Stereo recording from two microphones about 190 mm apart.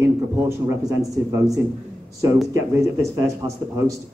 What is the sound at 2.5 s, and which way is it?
Speech, 15° right (ahead or behind).